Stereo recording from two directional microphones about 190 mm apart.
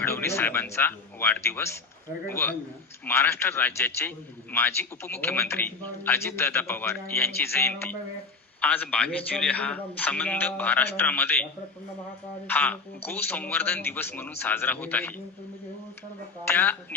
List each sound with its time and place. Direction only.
0.0 s a man's voice: 15° left (ahead or behind)
12.5 s a man's voice: 10° left (ahead or behind)
16.4 s a man's voice: 10° left (ahead or behind)